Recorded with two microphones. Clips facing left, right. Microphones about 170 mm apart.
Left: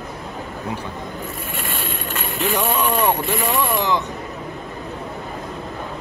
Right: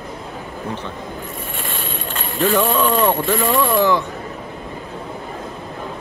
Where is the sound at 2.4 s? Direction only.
15° left (ahead or behind).